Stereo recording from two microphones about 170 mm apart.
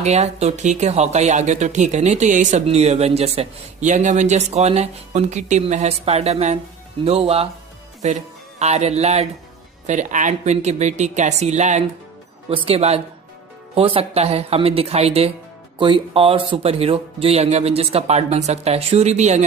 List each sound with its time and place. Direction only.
0.0 s a woman's voice: 40° right (ahead or behind)